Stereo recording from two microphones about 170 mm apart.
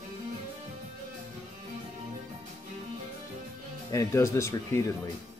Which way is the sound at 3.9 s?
15° left (ahead or behind).